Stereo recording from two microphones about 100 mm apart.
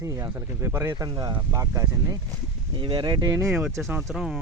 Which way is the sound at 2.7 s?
50° right (ahead or behind).